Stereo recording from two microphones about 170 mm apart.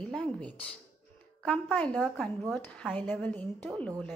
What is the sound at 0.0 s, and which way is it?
A woman's voice, 5° left (ahead or behind).